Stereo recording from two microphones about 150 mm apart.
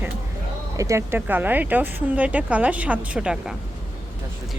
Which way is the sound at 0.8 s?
20° right (ahead or behind).